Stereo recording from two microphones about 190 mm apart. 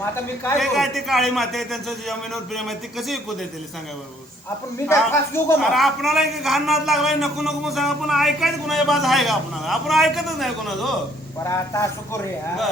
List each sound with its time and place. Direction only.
0.6 s a man's voice: centre (ahead or behind)
4.9 s speech: 15° left (ahead or behind)
5.5 s a man's voice: centre (ahead or behind)
11.4 s speech: 15° left (ahead or behind)